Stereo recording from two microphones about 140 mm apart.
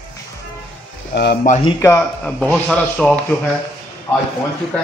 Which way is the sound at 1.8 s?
20° left (ahead or behind).